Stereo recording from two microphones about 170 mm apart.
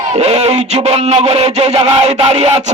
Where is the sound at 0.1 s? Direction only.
40° right (ahead or behind).